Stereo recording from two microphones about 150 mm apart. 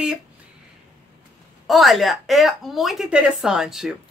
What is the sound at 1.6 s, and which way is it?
A woman's voice, centre (ahead or behind).